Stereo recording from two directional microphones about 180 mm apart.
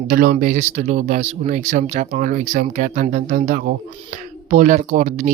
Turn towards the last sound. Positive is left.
turn(degrees=-45)  # may be behind; listen again after turning